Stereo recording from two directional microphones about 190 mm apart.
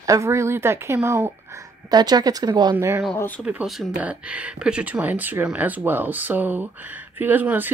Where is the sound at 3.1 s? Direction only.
10° left (ahead or behind).